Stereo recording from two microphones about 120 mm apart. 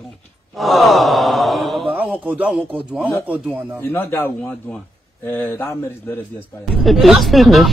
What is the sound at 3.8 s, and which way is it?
A man's voice, 15° left (ahead or behind).